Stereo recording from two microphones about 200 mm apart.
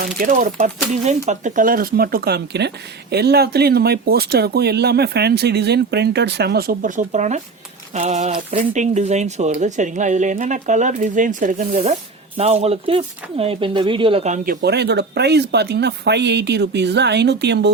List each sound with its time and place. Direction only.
0.0 s speech: 45° right (ahead or behind)